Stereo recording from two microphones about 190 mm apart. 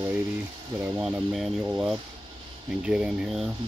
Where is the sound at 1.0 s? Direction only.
5° right (ahead or behind).